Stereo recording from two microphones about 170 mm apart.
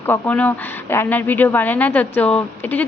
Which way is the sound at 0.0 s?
10° left (ahead or behind).